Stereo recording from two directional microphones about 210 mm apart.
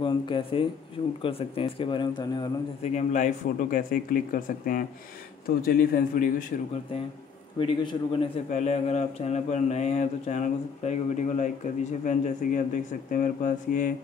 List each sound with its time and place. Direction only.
0.0 s speech: 25° left (ahead or behind)
2.9 s a man's voice: 35° left (ahead or behind)
7.5 s speech: 25° left (ahead or behind); by 13.9 s 40° left (ahead or behind)